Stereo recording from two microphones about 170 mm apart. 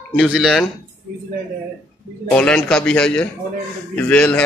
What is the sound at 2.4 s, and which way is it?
A man's voice, 5° left (ahead or behind).